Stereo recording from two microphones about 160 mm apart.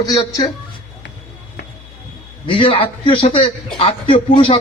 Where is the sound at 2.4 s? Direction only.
35° left (ahead or behind).